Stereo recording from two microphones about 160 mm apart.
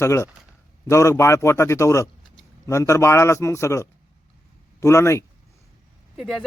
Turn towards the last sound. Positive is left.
turn(degrees=0)  # may be behind; listen again after turning